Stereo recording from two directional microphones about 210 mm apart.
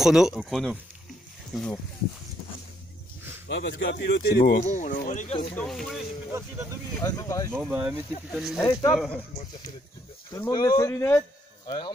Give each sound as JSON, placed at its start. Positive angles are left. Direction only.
{"t": 0.0, "sound": "speech", "side_deg": 0}
{"t": 3.4, "sound": "speech", "side_deg": 55}
{"t": 5.5, "sound": "speech", "side_deg": 5}
{"t": 7.0, "sound": "speech", "side_deg": 15}
{"t": 7.7, "sound": "speech", "side_deg": -10}
{"t": 8.5, "sound": "speech", "side_deg": 15}
{"t": 8.9, "sound": "speech", "side_deg": 0}
{"t": 10.3, "sound": "speech", "side_deg": 15}